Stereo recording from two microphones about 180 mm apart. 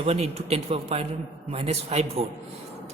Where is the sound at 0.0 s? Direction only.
35° right (ahead or behind).